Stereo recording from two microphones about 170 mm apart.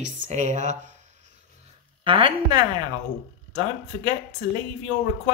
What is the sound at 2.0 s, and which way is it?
Speech, 30° right (ahead or behind).